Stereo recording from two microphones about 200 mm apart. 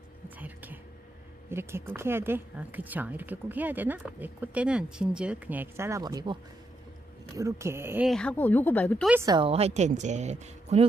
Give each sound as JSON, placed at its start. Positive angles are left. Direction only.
{"t": 0.4, "sound": "whispering", "side_deg": -10}
{"t": 1.5, "sound": "speech", "side_deg": -10}
{"t": 7.3, "sound": "speech", "side_deg": -15}
{"t": 8.1, "sound": "speech", "side_deg": 5}
{"t": 9.2, "sound": "a woman's voice", "side_deg": -25}